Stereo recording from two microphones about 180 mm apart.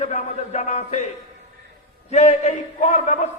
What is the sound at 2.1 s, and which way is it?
A man's voice, 40° left (ahead or behind).